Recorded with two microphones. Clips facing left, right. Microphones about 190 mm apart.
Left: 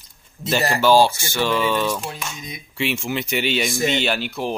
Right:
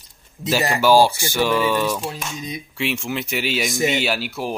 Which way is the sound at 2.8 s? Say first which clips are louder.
Left 1 dB; centre (ahead or behind).